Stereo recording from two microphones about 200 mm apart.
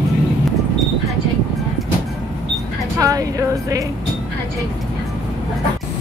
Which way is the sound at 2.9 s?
15° right (ahead or behind).